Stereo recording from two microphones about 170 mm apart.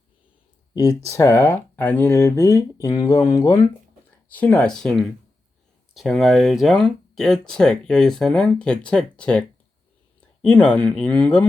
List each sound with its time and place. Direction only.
0.7 s speech: 20° left (ahead or behind)
4.3 s speech: 10° left (ahead or behind)